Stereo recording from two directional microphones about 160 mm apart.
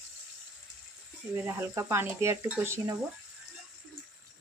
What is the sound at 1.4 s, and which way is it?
A woman's voice, 15° right (ahead or behind).